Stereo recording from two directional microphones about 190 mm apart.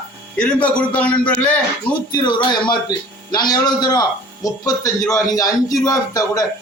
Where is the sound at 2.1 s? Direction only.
25° left (ahead or behind).